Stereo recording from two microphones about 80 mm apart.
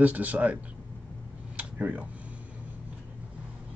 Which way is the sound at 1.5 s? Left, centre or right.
Centre.